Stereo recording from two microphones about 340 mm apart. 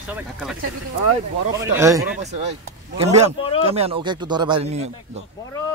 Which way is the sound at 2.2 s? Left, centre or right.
Centre.